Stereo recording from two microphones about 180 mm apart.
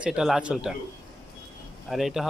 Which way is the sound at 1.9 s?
Centre (ahead or behind).